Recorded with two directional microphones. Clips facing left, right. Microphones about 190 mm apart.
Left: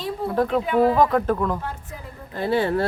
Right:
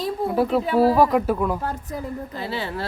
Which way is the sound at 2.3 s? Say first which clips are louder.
Left 12 dB; 50° left (ahead or behind).